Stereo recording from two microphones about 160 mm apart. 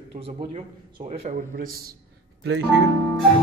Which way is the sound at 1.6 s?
70° right (ahead or behind).